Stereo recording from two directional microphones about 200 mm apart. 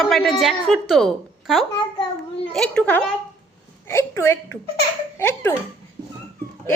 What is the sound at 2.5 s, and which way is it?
A woman's voice, 5° left (ahead or behind).